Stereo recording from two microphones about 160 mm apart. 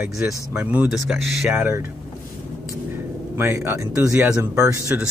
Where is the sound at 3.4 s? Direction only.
15° right (ahead or behind).